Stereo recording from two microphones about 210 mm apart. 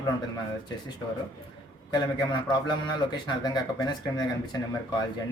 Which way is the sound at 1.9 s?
20° left (ahead or behind).